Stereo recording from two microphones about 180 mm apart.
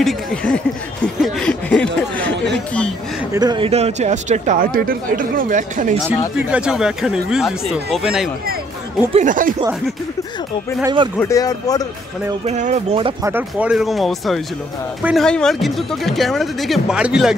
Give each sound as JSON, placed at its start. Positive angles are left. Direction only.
{"t": 0.0, "sound": "speech", "side_deg": 5}
{"t": 1.0, "sound": "a sound", "side_deg": 5}
{"t": 3.3, "sound": "speech", "side_deg": -25}
{"t": 6.5, "sound": "speech", "side_deg": -5}
{"t": 9.1, "sound": "speech", "side_deg": -45}
{"t": 11.1, "sound": "speech", "side_deg": 20}
{"t": 12.4, "sound": "speech", "side_deg": -40}
{"t": 13.2, "sound": "speech", "side_deg": -10}